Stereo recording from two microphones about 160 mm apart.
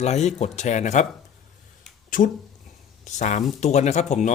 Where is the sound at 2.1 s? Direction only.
55° left (ahead or behind).